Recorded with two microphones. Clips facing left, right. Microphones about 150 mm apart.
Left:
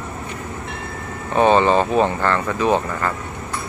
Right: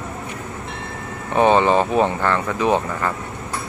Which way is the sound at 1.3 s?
15° right (ahead or behind).